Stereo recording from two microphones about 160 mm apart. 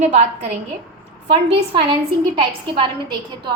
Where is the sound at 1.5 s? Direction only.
35° right (ahead or behind).